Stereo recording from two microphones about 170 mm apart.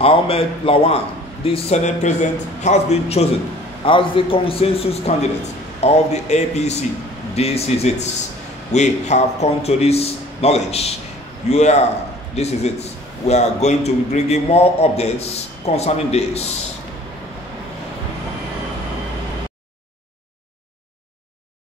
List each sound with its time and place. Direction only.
0.0 s a man's voice: 35° left (ahead or behind)